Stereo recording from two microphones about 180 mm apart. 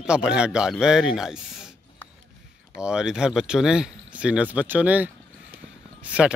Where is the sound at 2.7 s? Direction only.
5° right (ahead or behind).